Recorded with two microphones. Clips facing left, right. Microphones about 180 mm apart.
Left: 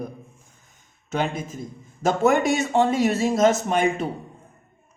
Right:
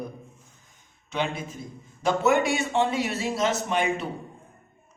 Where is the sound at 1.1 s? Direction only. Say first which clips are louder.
Left 3 dB; 45° left (ahead or behind).